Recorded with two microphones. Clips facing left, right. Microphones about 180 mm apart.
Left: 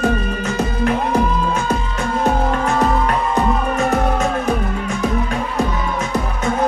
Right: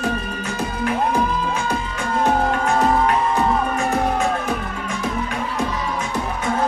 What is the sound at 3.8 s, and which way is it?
Music, 40° left (ahead or behind).